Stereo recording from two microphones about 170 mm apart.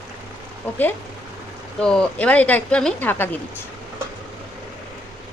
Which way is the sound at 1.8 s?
5° left (ahead or behind).